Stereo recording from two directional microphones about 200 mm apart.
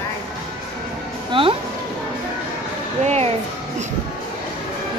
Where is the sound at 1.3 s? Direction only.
25° right (ahead or behind).